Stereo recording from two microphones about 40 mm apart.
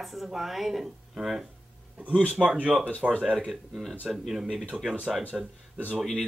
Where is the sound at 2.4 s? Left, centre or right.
Centre.